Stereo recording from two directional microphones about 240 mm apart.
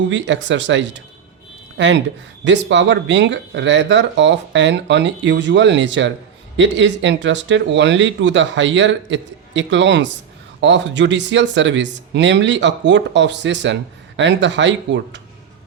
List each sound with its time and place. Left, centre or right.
0.1 s speech: right
2.4 s speech: right